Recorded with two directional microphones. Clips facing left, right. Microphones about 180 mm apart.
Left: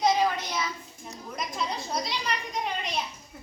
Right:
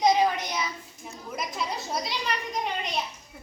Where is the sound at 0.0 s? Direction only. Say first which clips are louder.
Right 2 dB; 15° right (ahead or behind).